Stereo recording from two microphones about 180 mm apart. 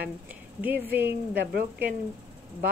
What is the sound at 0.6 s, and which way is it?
Speech, 10° right (ahead or behind).